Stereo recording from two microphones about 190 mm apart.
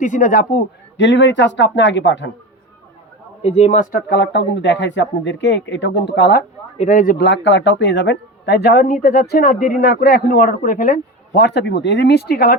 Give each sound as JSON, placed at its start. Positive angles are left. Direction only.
{"t": 0.0, "sound": "speech", "side_deg": 40}
{"t": 0.9, "sound": "speech", "side_deg": 70}
{"t": 3.4, "sound": "speech", "side_deg": 35}
{"t": 6.7, "sound": "speech", "side_deg": 40}